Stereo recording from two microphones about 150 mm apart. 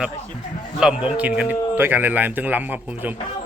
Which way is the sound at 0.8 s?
5° right (ahead or behind).